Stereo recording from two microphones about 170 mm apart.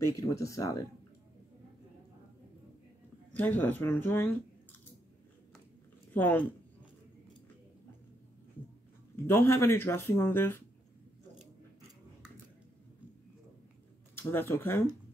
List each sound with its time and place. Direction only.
0.1 s speech: 20° left (ahead or behind)
3.3 s speech: 10° left (ahead or behind)
6.1 s speech: 10° left (ahead or behind)
9.1 s speech: 15° left (ahead or behind)
14.1 s speech: 15° left (ahead or behind)